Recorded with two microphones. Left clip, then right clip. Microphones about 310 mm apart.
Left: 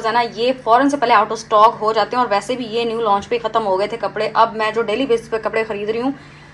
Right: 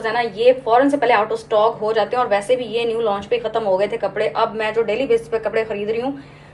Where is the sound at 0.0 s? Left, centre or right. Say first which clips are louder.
Right 1 dB; left.